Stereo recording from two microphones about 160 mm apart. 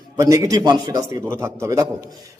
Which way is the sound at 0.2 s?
20° right (ahead or behind).